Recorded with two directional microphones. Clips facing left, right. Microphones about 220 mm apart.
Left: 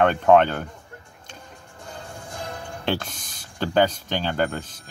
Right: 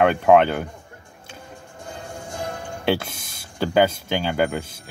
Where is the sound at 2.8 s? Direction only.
10° right (ahead or behind).